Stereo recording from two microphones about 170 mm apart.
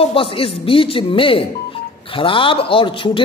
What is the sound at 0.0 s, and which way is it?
Speech, 35° left (ahead or behind).